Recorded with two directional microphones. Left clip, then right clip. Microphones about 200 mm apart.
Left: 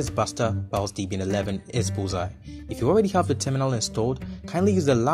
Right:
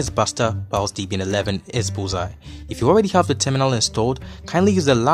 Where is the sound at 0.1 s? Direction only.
15° right (ahead or behind).